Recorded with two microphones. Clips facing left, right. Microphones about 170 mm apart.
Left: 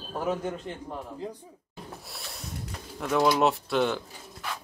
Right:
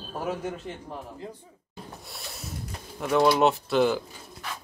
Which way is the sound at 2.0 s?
Centre (ahead or behind).